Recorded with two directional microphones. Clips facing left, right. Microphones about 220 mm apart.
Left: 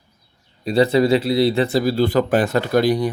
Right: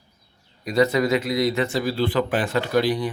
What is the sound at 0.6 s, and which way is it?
A man's voice, 30° left (ahead or behind).